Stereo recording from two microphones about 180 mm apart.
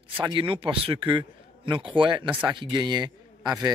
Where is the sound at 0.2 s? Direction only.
25° right (ahead or behind).